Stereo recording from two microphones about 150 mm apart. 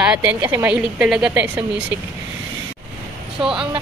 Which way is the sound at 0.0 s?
10° right (ahead or behind).